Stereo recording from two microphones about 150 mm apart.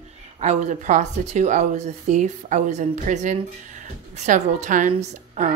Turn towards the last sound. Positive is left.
turn(degrees=-60)  # may be behind; listen again after turning